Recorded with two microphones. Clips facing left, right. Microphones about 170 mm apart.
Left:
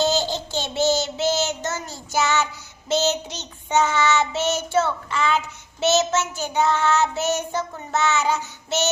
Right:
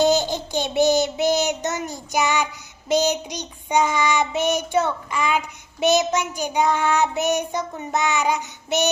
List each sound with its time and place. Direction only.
0.0 s child singing: 15° right (ahead or behind)